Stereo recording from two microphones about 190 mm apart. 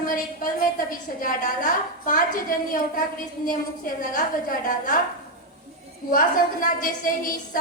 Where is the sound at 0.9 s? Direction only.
45° left (ahead or behind).